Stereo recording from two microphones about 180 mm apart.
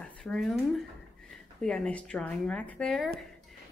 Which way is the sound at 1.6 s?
5° left (ahead or behind).